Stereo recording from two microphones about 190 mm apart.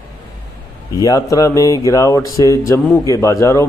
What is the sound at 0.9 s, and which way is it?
Speech, 20° left (ahead or behind).